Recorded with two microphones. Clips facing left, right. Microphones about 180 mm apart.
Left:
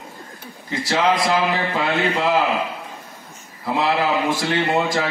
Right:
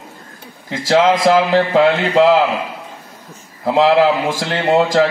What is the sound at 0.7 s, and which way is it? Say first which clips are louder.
Speech: right 6 dB; 90° right.